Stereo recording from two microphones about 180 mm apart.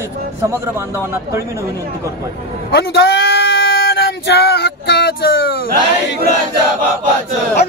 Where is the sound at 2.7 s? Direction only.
60° left (ahead or behind).